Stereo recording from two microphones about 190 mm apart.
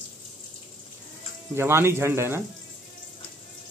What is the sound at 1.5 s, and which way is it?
Speech, 15° right (ahead or behind).